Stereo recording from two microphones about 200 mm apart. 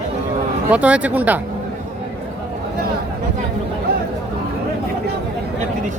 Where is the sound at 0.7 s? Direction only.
5° right (ahead or behind).